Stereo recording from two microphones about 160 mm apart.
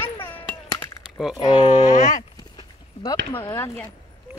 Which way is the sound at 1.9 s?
50° left (ahead or behind).